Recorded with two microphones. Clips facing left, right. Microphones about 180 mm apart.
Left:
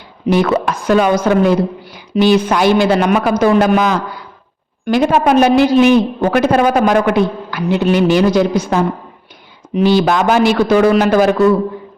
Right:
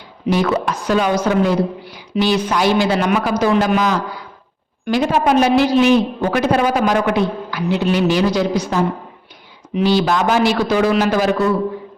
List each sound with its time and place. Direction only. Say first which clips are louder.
0.3 s a man's voice: left 4 dB; 55° left (ahead or behind)